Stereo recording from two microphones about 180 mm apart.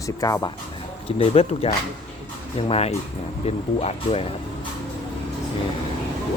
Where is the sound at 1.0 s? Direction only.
30° left (ahead or behind).